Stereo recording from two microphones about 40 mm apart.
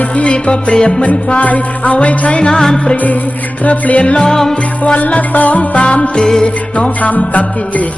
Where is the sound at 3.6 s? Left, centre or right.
Left.